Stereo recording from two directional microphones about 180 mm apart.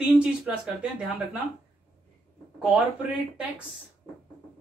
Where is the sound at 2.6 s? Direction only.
5° right (ahead or behind).